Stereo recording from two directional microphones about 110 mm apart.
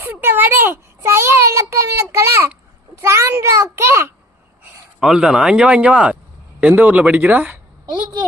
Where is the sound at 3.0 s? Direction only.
25° right (ahead or behind).